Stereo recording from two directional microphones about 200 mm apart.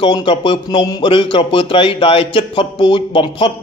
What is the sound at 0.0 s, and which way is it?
Speech, 25° left (ahead or behind).